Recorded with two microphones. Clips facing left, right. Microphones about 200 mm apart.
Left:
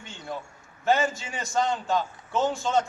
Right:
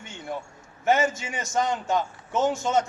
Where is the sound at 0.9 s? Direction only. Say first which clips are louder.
Right 1 dB; 20° right (ahead or behind).